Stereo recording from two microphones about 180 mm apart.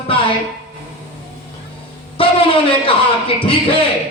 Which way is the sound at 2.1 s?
30° left (ahead or behind).